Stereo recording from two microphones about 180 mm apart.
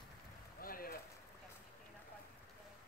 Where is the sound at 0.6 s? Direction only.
50° left (ahead or behind).